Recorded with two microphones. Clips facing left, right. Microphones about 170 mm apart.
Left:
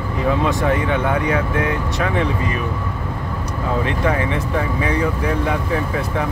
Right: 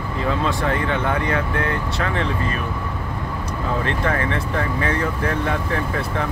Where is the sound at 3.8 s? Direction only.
15° left (ahead or behind).